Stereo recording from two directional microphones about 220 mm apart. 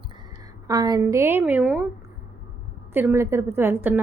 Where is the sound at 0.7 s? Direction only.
15° right (ahead or behind).